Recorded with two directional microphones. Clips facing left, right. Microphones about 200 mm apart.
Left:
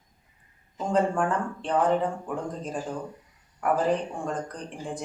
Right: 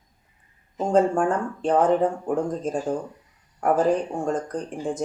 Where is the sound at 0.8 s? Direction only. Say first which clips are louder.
Right 5 dB; 40° right (ahead or behind).